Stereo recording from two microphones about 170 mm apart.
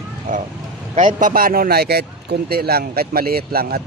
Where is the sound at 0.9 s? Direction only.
50° right (ahead or behind).